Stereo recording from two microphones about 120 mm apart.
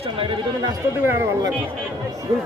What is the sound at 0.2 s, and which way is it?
Speech, 45° right (ahead or behind).